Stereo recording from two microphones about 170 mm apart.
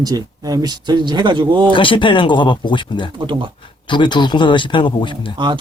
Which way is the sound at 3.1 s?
30° right (ahead or behind).